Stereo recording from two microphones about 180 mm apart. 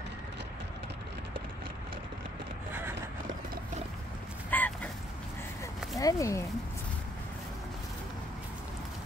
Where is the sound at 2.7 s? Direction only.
10° right (ahead or behind).